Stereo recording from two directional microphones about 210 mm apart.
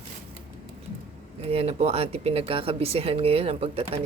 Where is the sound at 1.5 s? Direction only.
30° right (ahead or behind).